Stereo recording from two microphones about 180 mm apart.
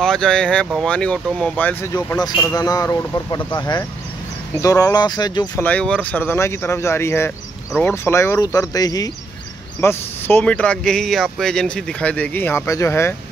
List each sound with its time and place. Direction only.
0.0 s speech: 5° left (ahead or behind)
2.1 s speech: 20° left (ahead or behind)
5.6 s speech: 10° left (ahead or behind)